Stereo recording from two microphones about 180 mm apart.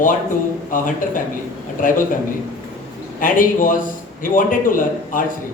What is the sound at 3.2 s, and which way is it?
Speech, 50° left (ahead or behind).